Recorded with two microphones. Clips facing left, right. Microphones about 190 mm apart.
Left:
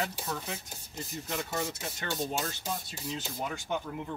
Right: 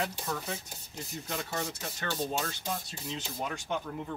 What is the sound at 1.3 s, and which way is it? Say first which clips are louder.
Speech: left 1 dB; 5° left (ahead or behind).